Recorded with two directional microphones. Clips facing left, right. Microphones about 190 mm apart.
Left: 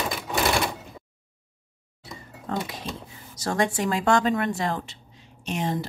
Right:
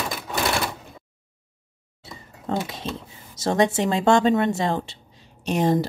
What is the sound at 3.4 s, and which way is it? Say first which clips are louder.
A woman's voice: right 4 dB; 20° right (ahead or behind).